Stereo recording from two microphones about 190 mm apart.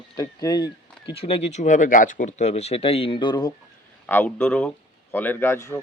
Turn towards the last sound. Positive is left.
turn(degrees=15)  # may be behind; listen again after turning